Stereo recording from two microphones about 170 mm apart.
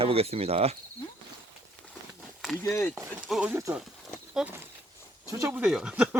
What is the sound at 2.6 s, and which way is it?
Speech, 15° left (ahead or behind).